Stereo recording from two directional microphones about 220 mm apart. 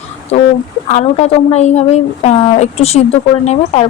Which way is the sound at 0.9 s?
30° left (ahead or behind).